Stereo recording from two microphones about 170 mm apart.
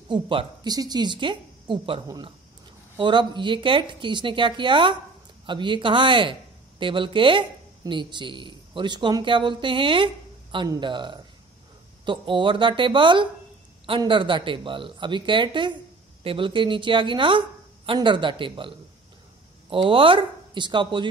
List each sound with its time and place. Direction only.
0.1 s a woman's voice: 30° right (ahead or behind)